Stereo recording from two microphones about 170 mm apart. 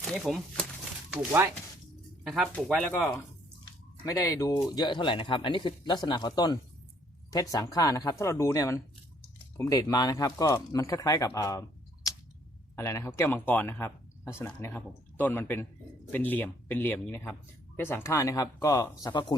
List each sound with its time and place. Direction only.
0.0 s speech: centre (ahead or behind)
2.2 s speech: 5° right (ahead or behind)
4.0 s speech: 20° left (ahead or behind)
12.7 s speech: 15° left (ahead or behind)